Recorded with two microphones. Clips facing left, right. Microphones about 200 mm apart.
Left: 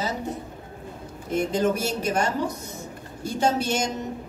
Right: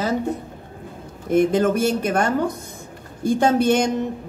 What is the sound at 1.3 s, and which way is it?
A woman's voice, 55° right (ahead or behind).